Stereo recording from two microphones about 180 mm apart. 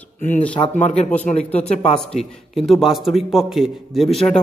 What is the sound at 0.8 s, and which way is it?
Speech, 40° left (ahead or behind).